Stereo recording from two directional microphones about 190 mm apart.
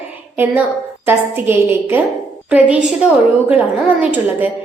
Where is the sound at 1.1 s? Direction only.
10° right (ahead or behind).